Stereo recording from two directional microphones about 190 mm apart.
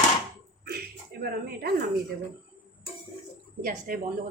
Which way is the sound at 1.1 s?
55° right (ahead or behind).